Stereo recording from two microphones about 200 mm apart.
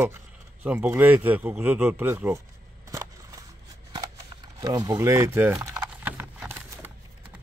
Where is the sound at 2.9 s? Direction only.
15° right (ahead or behind).